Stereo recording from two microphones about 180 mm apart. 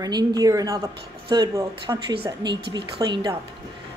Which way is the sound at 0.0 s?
20° right (ahead or behind).